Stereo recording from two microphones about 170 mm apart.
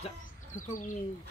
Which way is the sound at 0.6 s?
50° left (ahead or behind).